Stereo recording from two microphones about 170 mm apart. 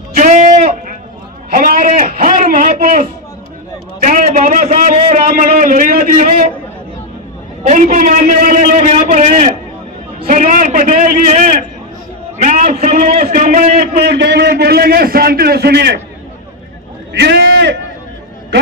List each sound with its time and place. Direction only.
0.1 s sheep: 45° right (ahead or behind)
1.5 s a man's voice: 55° right (ahead or behind)
4.0 s a man's voice: 50° right (ahead or behind)
7.6 s a man's voice: 50° right (ahead or behind)
12.4 s a sound: 50° right (ahead or behind)
12.7 s a man's voice: 45° right (ahead or behind)
14.0 s a man's voice: 80° right
17.1 s a sound: 85° right